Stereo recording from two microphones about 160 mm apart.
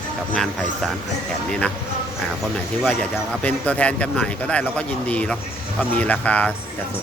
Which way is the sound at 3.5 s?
10° left (ahead or behind).